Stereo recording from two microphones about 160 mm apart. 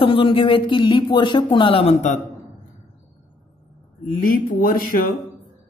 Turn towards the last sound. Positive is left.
turn(degrees=60)  # may be behind; listen again after turning